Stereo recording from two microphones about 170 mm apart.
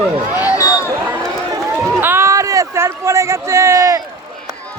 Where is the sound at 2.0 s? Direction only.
15° right (ahead or behind).